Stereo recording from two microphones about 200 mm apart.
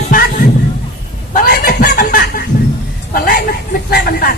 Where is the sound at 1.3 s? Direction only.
45° left (ahead or behind).